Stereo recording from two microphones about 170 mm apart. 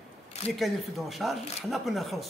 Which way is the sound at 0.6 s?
Centre (ahead or behind).